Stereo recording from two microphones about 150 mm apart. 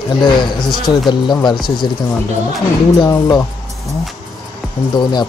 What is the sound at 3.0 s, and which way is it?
Speech, 30° left (ahead or behind).